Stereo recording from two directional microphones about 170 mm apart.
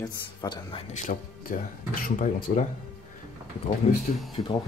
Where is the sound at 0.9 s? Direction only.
50° left (ahead or behind).